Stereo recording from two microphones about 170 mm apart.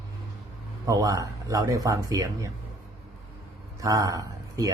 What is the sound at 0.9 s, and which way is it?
Speech, 20° right (ahead or behind).